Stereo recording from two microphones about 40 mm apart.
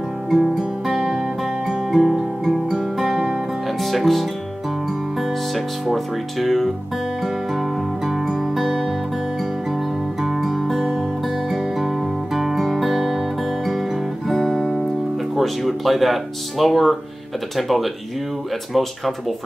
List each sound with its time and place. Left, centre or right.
0.3 s music: centre
6.4 s speech: centre
7.5 s music: centre
10.2 s music: centre
12.4 s music: centre
13.7 s guitar: centre
15.3 s speech: centre